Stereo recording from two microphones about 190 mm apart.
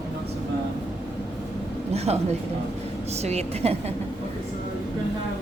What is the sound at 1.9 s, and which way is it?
A man's voice, 35° right (ahead or behind).